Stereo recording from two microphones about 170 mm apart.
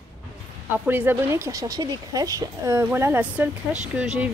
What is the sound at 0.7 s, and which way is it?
Speech, 10° right (ahead or behind).